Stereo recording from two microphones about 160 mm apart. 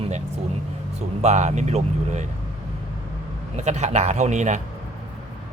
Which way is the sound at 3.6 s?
45° right (ahead or behind).